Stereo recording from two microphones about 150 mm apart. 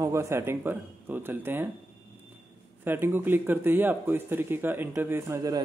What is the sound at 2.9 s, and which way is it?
Speech, 15° right (ahead or behind).